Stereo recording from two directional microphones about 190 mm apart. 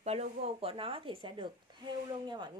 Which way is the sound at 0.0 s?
35° right (ahead or behind).